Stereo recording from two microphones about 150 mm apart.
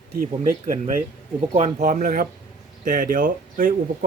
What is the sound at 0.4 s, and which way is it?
Speech, 55° right (ahead or behind).